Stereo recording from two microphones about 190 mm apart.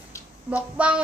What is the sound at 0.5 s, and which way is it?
Speech, 5° right (ahead or behind).